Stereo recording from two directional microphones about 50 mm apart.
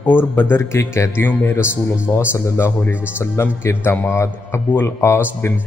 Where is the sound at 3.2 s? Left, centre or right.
Left.